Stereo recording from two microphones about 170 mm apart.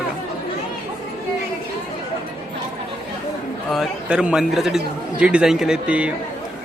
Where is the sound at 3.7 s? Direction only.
5° right (ahead or behind).